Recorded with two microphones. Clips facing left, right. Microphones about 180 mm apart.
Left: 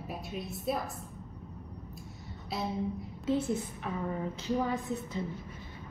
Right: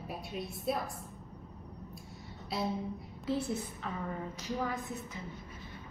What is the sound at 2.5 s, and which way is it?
Speech, centre (ahead or behind).